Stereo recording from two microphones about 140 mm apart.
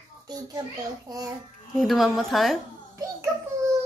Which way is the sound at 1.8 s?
Centre (ahead or behind).